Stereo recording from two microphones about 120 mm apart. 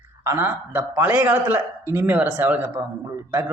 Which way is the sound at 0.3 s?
15° right (ahead or behind).